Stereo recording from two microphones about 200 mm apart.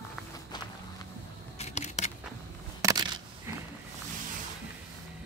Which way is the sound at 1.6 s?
35° left (ahead or behind).